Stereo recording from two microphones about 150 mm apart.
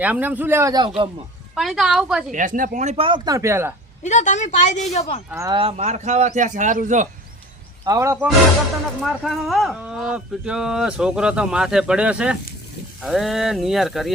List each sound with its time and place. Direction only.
0.0 s a man's voice: 10° right (ahead or behind)
0.9 s speech: 40° right (ahead or behind)
1.5 s speech: centre (ahead or behind)
2.3 s speech: 60° right (ahead or behind); by 3.2 s 40° right (ahead or behind)
3.2 s a man's voice: 20° right (ahead or behind)
4.0 s a woman's voice: 55° left (ahead or behind)
5.5 s speech: 40° right (ahead or behind); by 7.1 s 55° right (ahead or behind)
7.9 s speech: 20° right (ahead or behind)
9.0 s speech: centre (ahead or behind)